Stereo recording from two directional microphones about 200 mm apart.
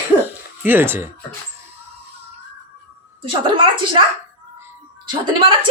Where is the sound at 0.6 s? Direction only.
10° right (ahead or behind).